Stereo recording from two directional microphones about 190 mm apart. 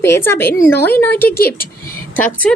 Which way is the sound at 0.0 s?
15° left (ahead or behind).